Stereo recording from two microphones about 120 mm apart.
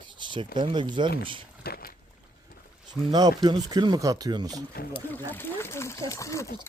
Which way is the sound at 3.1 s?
35° right (ahead or behind).